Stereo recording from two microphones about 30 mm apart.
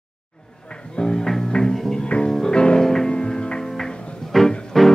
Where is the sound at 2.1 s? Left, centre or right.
Left.